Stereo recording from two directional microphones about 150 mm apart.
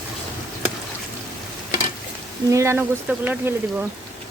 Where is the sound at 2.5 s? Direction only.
20° right (ahead or behind).